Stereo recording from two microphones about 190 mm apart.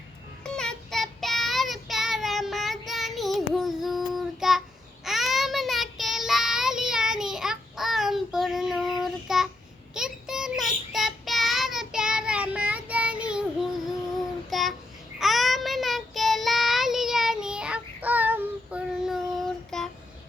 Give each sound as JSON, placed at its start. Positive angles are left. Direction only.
{"t": 0.4, "sound": "child singing", "side_deg": 5}